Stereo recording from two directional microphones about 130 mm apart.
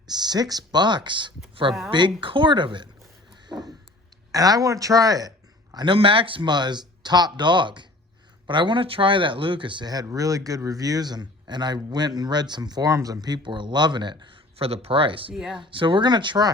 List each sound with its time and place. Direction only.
0.1 s speech: 30° right (ahead or behind)
4.3 s speech: 25° right (ahead or behind)
5.7 s speech: 40° right (ahead or behind)
14.7 s speech: 50° right (ahead or behind)
15.3 s speech: 5° right (ahead or behind)
15.5 s speech: 40° right (ahead or behind)